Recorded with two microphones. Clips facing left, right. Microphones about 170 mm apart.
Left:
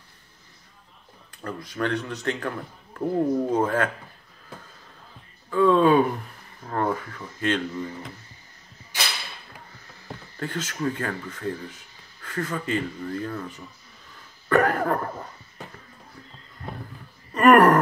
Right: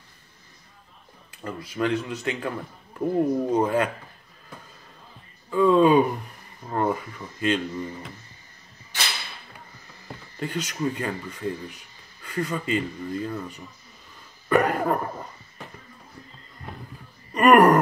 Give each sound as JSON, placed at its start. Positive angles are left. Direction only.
{"t": 1.3, "sound": "speech", "side_deg": -10}
{"t": 5.5, "sound": "speech", "side_deg": -15}
{"t": 10.4, "sound": "speech", "side_deg": -15}
{"t": 17.3, "sound": "gasp", "side_deg": -10}